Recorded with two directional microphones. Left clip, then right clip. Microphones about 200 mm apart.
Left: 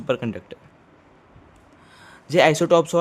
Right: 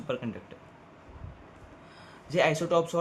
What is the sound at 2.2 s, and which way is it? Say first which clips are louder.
Speech: left 9 dB; 60° left (ahead or behind).